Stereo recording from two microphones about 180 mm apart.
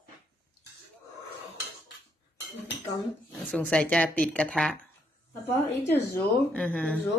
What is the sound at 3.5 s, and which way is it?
Speech, 5° left (ahead or behind).